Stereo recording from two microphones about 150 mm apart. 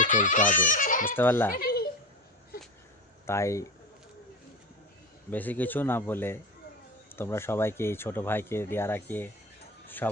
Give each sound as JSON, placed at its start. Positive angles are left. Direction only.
{"t": 0.0, "sound": "speech", "side_deg": 60}
{"t": 1.1, "sound": "speech", "side_deg": 15}
{"t": 1.5, "sound": "a sound", "side_deg": 90}
{"t": 3.2, "sound": "speech", "side_deg": 20}
{"t": 5.3, "sound": "speech", "side_deg": 10}